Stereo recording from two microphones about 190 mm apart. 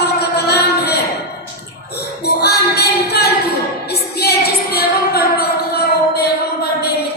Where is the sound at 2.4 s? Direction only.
60° left (ahead or behind).